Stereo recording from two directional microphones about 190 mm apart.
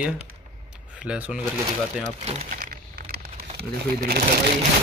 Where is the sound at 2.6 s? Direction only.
50° right (ahead or behind).